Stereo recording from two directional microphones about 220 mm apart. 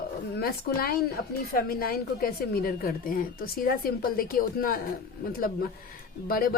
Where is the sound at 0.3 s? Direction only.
45° left (ahead or behind).